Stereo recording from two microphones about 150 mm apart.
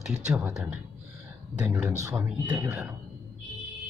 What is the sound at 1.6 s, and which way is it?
Speech, 10° right (ahead or behind).